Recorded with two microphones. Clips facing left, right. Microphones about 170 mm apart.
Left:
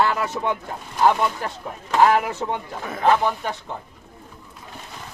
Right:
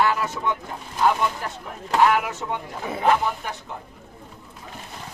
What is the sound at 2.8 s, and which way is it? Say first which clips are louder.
Speech: left 1 dB; 10° right (ahead or behind).